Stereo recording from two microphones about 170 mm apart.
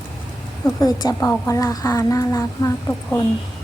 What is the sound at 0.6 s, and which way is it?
A woman's voice, 20° left (ahead or behind).